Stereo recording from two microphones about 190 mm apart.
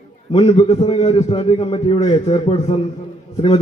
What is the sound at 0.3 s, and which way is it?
A man's voice, 30° left (ahead or behind).